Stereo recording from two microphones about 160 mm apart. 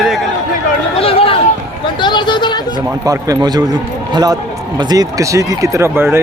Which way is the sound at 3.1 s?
25° right (ahead or behind).